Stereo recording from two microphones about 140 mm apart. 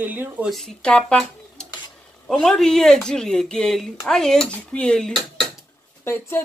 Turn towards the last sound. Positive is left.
turn(degrees=20)  # may be behind; listen again after turning